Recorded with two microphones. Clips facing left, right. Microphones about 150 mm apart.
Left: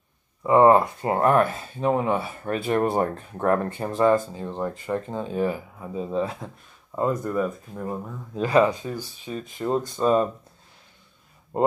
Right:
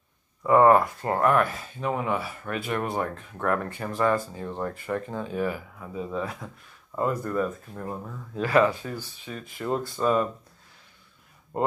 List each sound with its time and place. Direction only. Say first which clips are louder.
0.4 s speech: left 2 dB; 20° left (ahead or behind)
7.3 s speech: left 2 dB; 10° left (ahead or behind)
8.4 s speech: left 2 dB; 20° left (ahead or behind)
11.5 s speech: left 5 dB; 20° left (ahead or behind)